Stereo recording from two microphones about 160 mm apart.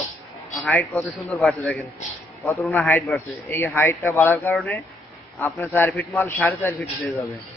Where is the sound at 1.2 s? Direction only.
Centre (ahead or behind).